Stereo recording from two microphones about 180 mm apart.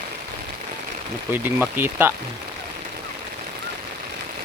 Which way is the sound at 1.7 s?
10° right (ahead or behind).